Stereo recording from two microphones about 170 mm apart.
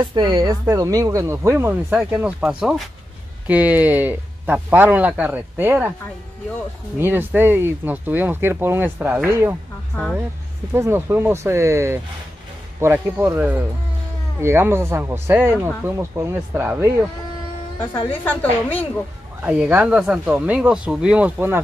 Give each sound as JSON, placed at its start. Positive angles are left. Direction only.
{"t": 0.1, "sound": "speech", "side_deg": -25}
{"t": 7.0, "sound": "speech", "side_deg": -10}
{"t": 10.7, "sound": "speech", "side_deg": -15}
{"t": 18.2, "sound": "a woman's voice", "side_deg": 10}
{"t": 19.4, "sound": "speech", "side_deg": -10}